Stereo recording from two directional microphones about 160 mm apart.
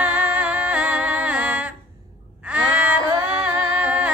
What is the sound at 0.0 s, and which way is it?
Music, 5° right (ahead or behind).